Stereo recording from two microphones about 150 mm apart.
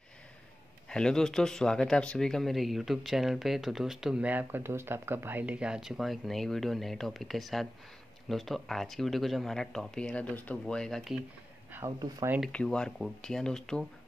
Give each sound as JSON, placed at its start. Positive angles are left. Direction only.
{"t": 0.8, "sound": "speech", "side_deg": 5}
{"t": 11.7, "sound": "speech", "side_deg": -20}
{"t": 12.4, "sound": "speech", "side_deg": 5}